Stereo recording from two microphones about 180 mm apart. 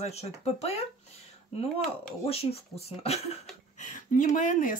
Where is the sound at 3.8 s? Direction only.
45° left (ahead or behind).